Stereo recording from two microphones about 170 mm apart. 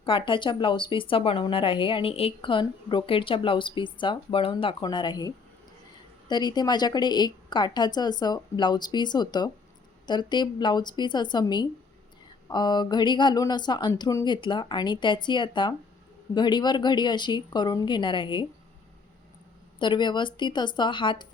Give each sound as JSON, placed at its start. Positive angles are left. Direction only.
{"t": 0.0, "sound": "a woman's voice", "side_deg": 30}
{"t": 19.8, "sound": "a woman's voice", "side_deg": 25}